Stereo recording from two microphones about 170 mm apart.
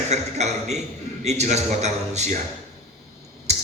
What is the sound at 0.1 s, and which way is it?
A man's voice, 40° right (ahead or behind).